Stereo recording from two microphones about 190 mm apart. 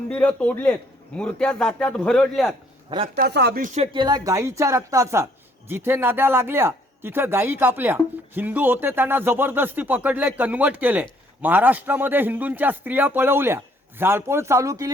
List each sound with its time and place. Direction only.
0.1 s a man's voice: 5° left (ahead or behind)
3.2 s speech: 60° right (ahead or behind)
3.6 s speech: 40° right (ahead or behind)
3.9 s a woman's voice: 20° right (ahead or behind)